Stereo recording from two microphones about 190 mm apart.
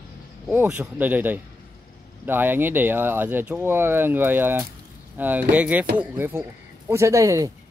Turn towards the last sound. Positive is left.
turn(degrees=-15)  # may be behind; listen again after turning